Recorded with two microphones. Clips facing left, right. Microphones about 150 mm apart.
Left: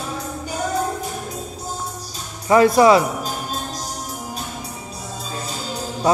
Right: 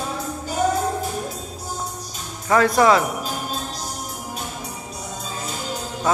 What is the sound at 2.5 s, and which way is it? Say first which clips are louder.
Speech: left 4 dB; 10° left (ahead or behind).